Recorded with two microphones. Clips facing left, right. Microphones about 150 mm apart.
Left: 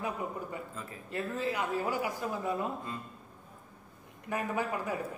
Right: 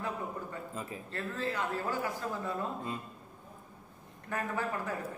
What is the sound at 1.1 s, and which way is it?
A man's voice, 15° left (ahead or behind).